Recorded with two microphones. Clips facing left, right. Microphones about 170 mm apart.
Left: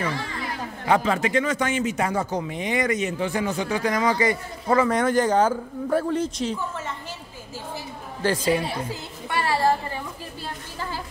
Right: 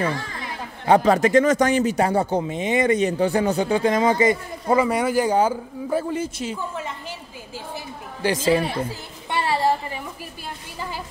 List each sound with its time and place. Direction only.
0.8 s speech: 35° right (ahead or behind); by 7.2 s 10° right (ahead or behind)
8.2 s a woman's voice: 10° right (ahead or behind)
9.3 s a sound: 20° right (ahead or behind)